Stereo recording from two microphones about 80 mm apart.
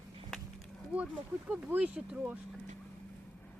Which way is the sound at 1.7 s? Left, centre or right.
Right.